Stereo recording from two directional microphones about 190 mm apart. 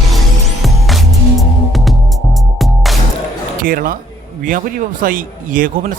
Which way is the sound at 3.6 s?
45° right (ahead or behind).